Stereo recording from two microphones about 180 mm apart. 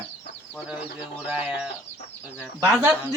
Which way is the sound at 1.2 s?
5° right (ahead or behind).